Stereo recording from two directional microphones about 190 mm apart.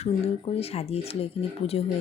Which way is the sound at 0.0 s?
30° left (ahead or behind).